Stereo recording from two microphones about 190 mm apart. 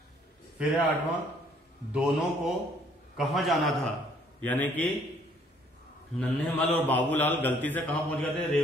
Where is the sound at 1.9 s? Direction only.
5° right (ahead or behind).